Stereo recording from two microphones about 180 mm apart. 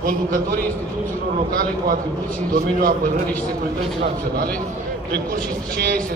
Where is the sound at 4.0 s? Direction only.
55° right (ahead or behind).